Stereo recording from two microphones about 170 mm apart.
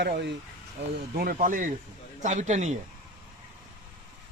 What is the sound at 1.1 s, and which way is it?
A man's voice, 60° right (ahead or behind).